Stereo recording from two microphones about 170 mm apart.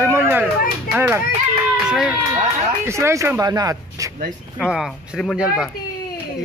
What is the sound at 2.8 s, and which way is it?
Speech, 15° right (ahead or behind).